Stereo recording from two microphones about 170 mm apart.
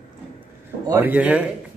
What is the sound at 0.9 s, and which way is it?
Speech, 10° right (ahead or behind).